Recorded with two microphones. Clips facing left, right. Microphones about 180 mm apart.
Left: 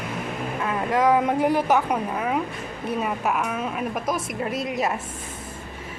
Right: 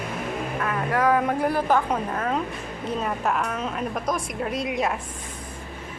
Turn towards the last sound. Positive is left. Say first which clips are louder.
# even
turn(degrees=0)  # may be behind; listen again after turning